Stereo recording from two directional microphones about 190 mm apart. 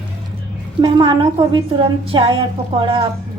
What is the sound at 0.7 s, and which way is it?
A woman's voice, 20° right (ahead or behind).